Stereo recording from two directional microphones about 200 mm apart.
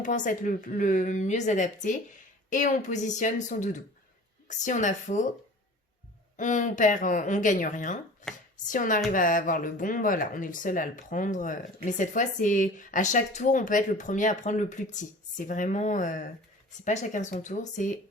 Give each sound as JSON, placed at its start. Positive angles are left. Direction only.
{"t": 0.0, "sound": "speech", "side_deg": 40}
{"t": 6.3, "sound": "speech", "side_deg": 40}